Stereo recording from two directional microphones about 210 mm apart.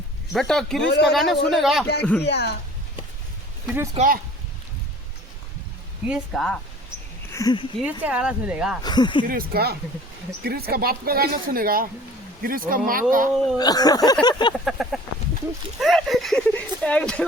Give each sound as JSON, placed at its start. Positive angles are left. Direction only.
{"t": 0.3, "sound": "speech", "side_deg": 0}
{"t": 2.2, "sound": "speech", "side_deg": 55}
{"t": 3.9, "sound": "speech", "side_deg": -40}
{"t": 6.1, "sound": "speech", "side_deg": 0}
{"t": 7.3, "sound": "a sound", "side_deg": 15}
{"t": 7.8, "sound": "speech", "side_deg": -5}
{"t": 8.8, "sound": "speech", "side_deg": 20}
{"t": 9.2, "sound": "speech", "side_deg": -45}
{"t": 13.3, "sound": "speech", "side_deg": 0}
{"t": 13.6, "sound": "speech", "side_deg": 20}
{"t": 14.6, "sound": "speech", "side_deg": 0}